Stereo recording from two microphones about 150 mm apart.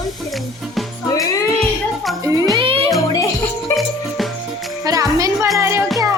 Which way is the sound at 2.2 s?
25° right (ahead or behind).